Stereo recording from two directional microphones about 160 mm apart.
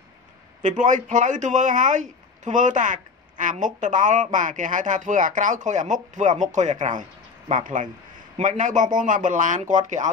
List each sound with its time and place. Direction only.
0.6 s speech: 50° right (ahead or behind)